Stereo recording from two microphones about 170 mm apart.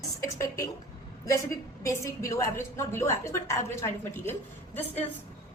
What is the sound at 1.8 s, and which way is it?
A woman's voice, 20° left (ahead or behind).